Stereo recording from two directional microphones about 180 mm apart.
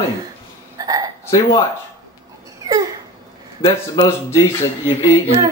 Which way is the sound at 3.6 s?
20° left (ahead or behind).